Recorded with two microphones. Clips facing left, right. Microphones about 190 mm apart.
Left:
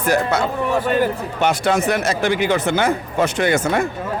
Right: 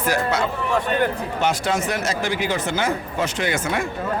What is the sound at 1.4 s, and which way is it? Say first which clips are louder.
Speech: left 4 dB; 60° left (ahead or behind).